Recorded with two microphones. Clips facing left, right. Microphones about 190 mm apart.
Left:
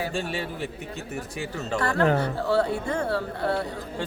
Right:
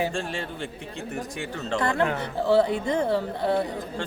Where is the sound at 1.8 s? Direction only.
20° right (ahead or behind).